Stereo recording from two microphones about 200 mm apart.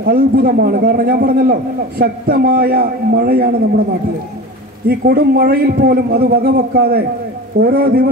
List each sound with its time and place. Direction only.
0.0 s a man's voice: 45° right (ahead or behind)
4.8 s a man's voice: 50° right (ahead or behind)